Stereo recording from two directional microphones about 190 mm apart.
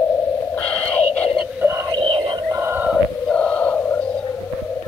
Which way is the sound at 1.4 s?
10° right (ahead or behind).